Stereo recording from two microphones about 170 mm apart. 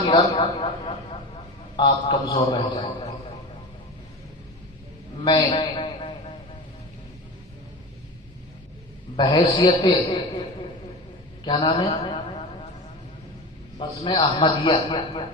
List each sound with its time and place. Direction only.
0.1 s a man's voice: 30° left (ahead or behind)
5.2 s a man's voice: 25° left (ahead or behind)
9.1 s a man's voice: 30° left (ahead or behind)
11.4 s a man's voice: 25° left (ahead or behind)
13.7 s a man's voice: 25° left (ahead or behind)